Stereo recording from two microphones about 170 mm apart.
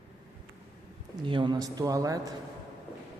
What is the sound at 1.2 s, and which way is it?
Speech, 25° right (ahead or behind).